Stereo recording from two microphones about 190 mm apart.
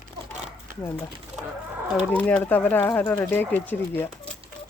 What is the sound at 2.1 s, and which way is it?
Speech, 5° left (ahead or behind).